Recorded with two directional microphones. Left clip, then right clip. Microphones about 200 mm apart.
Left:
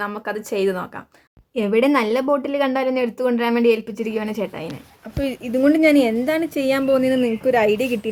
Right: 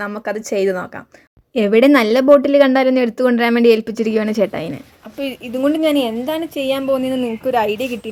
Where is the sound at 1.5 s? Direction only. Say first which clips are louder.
Right 6 dB; 25° right (ahead or behind).